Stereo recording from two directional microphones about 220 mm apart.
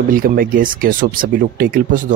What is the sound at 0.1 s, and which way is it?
Speech, 40° right (ahead or behind).